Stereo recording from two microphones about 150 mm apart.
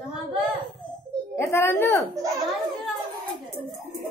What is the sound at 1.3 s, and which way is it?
Speech, 15° left (ahead or behind).